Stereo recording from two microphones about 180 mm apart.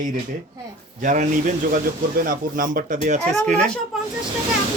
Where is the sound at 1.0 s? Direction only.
45° right (ahead or behind).